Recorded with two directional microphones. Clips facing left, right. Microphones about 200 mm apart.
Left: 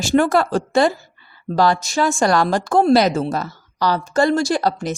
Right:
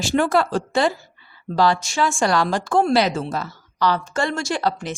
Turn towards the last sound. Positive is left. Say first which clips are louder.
# left 4 dB
turn(degrees=40)  # may be behind; listen again after turning